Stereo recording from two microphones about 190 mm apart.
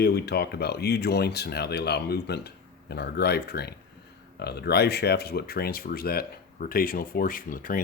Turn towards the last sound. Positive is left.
turn(degrees=45)  # may be behind; listen again after turning